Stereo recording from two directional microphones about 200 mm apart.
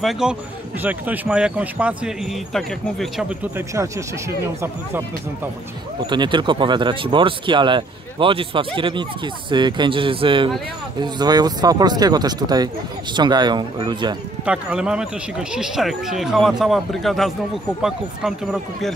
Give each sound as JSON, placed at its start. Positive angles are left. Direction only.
{"t": 0.0, "sound": "speech", "side_deg": 0}
{"t": 3.7, "sound": "speech", "side_deg": -15}
{"t": 6.0, "sound": "speech", "side_deg": -20}
{"t": 14.4, "sound": "speech", "side_deg": -5}